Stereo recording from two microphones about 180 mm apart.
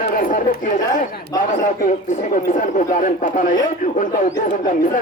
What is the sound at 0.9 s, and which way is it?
A man's voice, 45° left (ahead or behind).